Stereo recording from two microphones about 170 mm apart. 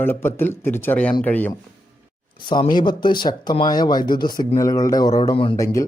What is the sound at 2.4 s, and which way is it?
Speech, 25° left (ahead or behind).